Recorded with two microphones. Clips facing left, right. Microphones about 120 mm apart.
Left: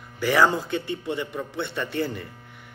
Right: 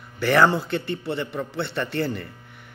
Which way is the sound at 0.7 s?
60° right (ahead or behind).